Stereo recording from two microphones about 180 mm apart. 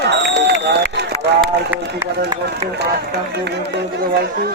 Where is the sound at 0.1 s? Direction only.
70° right (ahead or behind).